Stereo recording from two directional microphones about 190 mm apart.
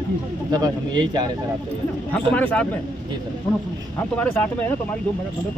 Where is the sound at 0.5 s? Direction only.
20° right (ahead or behind).